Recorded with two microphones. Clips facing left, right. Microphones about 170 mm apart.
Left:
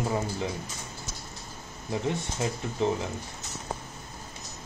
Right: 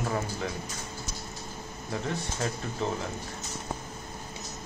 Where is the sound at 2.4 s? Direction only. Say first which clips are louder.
Left 2 dB; 15° left (ahead or behind).